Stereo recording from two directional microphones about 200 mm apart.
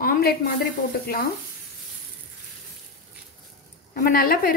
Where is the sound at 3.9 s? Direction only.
45° left (ahead or behind).